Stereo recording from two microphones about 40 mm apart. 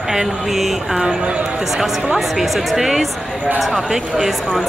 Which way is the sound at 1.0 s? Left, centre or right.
Centre.